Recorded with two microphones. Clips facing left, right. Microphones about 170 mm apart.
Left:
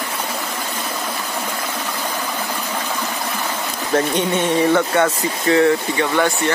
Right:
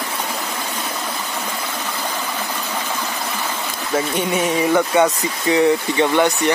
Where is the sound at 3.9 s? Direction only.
5° right (ahead or behind).